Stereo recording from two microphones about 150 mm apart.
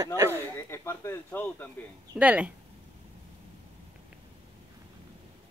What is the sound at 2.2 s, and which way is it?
Speech, 10° right (ahead or behind).